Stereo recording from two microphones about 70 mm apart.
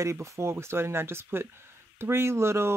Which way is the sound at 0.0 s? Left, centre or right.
Right.